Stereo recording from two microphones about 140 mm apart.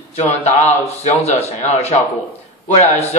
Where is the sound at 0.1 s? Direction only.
50° left (ahead or behind).